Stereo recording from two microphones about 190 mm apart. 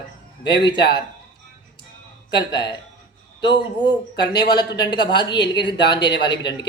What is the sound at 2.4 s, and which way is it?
Speech, 25° left (ahead or behind).